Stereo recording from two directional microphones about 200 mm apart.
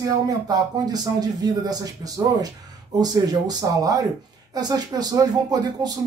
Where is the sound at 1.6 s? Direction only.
20° right (ahead or behind).